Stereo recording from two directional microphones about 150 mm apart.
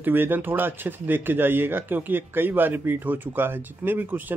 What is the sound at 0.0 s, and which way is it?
Speech, 15° right (ahead or behind).